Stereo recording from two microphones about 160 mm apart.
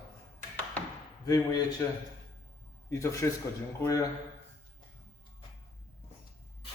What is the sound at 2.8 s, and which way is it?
A man's voice, 20° left (ahead or behind).